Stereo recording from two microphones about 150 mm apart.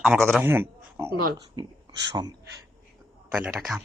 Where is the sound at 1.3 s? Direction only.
30° right (ahead or behind).